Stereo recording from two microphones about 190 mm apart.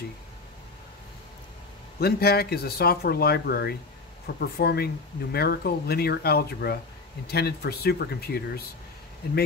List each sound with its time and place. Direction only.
2.0 s speech: 55° left (ahead or behind)